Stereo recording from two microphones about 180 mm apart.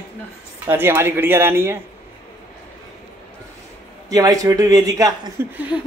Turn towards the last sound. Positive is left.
turn(degrees=-15)  # may be behind; listen again after turning